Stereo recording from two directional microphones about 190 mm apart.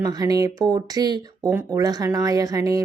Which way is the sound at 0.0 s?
20° right (ahead or behind).